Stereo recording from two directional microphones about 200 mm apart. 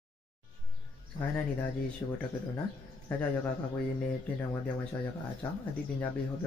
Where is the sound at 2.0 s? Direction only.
15° left (ahead or behind).